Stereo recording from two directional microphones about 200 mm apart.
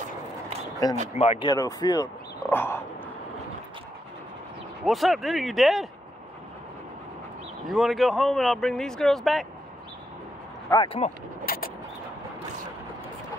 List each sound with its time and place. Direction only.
0.8 s speech: 20° left (ahead or behind)
1.1 s speech: 30° left (ahead or behind)
2.4 s a sound: 10° left (ahead or behind)
4.8 s speech: centre (ahead or behind)
7.6 s speech: centre (ahead or behind)
10.7 s speech: 25° left (ahead or behind)
11.4 s vehicle: 50° left (ahead or behind)